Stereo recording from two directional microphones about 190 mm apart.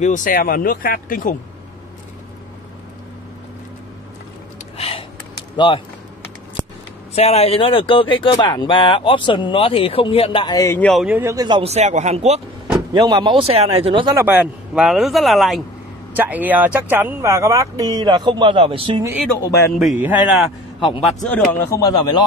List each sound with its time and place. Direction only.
0.0 s speech: 45° left (ahead or behind)
4.7 s a sound: 30° left (ahead or behind)
7.2 s speech: 35° left (ahead or behind); by 11.1 s 5° left (ahead or behind)
11.1 s speech: 10° right (ahead or behind); by 12.4 s 35° right (ahead or behind)
12.9 s speech: 25° right (ahead or behind)
14.1 s speech: 10° right (ahead or behind); by 19.0 s 25° right (ahead or behind)
19.4 s speech: 15° left (ahead or behind)
19.8 s speech: 5° right (ahead or behind)
21.6 s speech: 15° left (ahead or behind)